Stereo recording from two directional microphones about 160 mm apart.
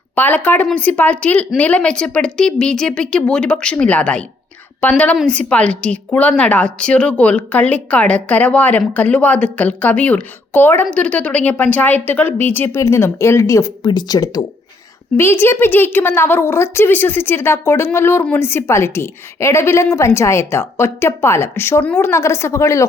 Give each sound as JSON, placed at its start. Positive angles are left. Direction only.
{"t": 0.2, "sound": "a woman's voice", "side_deg": 10}